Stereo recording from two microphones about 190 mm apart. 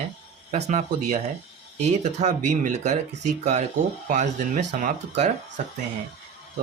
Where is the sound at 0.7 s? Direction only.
40° right (ahead or behind).